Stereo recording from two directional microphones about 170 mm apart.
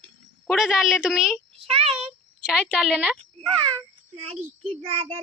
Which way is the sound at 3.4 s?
35° right (ahead or behind).